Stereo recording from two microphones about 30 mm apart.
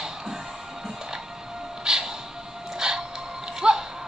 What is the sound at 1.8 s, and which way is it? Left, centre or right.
Music, right.